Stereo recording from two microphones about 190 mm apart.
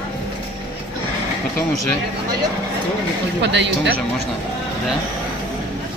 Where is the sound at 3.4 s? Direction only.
65° right (ahead or behind).